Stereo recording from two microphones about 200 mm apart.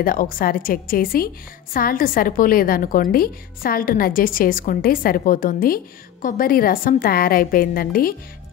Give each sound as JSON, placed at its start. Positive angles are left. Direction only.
{"t": 0.0, "sound": "a woman's voice", "side_deg": 45}